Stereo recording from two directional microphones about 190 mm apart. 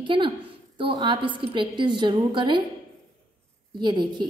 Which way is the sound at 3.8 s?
25° right (ahead or behind).